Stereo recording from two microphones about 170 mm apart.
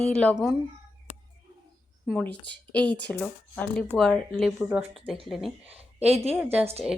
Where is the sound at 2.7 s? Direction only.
10° left (ahead or behind).